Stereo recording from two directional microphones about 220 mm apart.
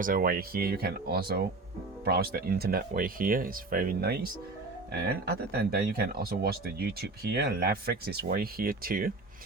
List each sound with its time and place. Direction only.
0.0 s speech: 40° right (ahead or behind)